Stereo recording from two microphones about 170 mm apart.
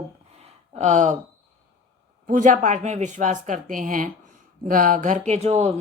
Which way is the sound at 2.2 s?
50° right (ahead or behind).